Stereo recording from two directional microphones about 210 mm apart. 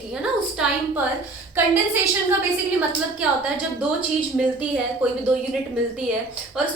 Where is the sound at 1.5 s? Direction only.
10° right (ahead or behind).